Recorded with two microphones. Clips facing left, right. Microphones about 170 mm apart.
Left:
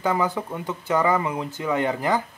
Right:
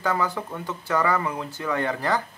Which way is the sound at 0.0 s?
20° left (ahead or behind).